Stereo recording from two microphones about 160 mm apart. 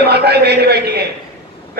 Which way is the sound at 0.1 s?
90° right.